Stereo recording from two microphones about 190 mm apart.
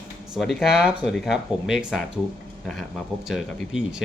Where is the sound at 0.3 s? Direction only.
Centre (ahead or behind).